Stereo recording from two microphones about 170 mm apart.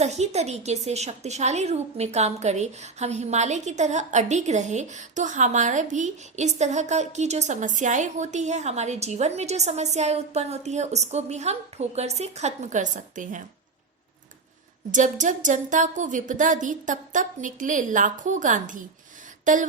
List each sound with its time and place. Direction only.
0.0 s a woman's voice: 40° right (ahead or behind)
14.9 s speech: 45° right (ahead or behind)